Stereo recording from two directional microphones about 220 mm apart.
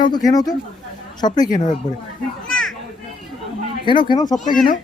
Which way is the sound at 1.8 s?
20° left (ahead or behind).